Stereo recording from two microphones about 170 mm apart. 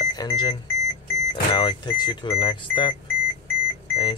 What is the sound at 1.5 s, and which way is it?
Speech, 30° left (ahead or behind).